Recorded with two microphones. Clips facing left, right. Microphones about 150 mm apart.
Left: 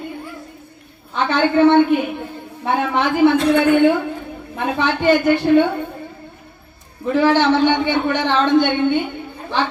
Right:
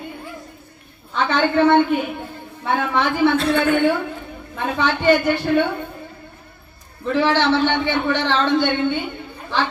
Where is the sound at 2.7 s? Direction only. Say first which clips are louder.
Left 3 dB; 15° left (ahead or behind).